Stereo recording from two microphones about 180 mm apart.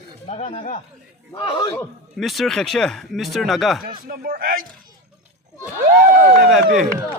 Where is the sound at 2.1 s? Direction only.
Centre (ahead or behind).